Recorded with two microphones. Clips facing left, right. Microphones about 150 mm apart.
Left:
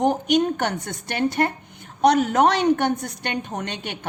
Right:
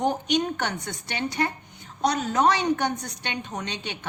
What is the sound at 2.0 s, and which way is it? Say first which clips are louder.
A woman's voice: left 5 dB; 60° left (ahead or behind).